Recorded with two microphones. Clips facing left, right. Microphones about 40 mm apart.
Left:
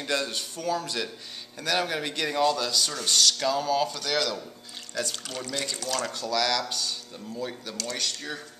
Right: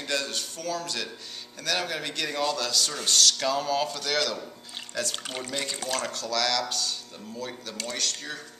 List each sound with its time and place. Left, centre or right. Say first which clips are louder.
0.0 s a man's voice: left 1 dB; centre
5.1 s speech: right 2 dB; right
5.4 s speech: left 1 dB; centre
6.1 s speech: left 2 dB; centre